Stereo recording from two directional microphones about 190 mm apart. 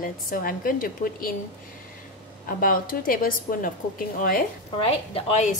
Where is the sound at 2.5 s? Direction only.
45° left (ahead or behind).